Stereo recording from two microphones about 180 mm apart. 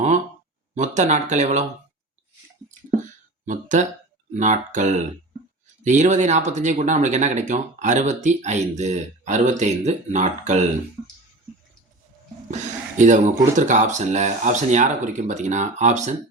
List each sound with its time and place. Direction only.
0.8 s speech: 40° right (ahead or behind)
3.4 s speech: 45° right (ahead or behind)
13.0 s speech: 45° right (ahead or behind)